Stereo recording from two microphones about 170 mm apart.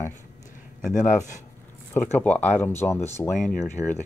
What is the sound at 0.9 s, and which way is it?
Speech, 45° left (ahead or behind).